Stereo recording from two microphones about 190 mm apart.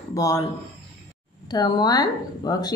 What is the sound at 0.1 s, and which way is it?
Speech, 20° left (ahead or behind).